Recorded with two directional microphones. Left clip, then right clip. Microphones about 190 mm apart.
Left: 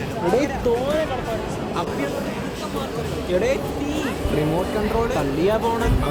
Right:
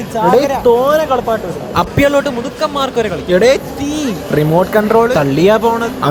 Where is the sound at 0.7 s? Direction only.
15° right (ahead or behind).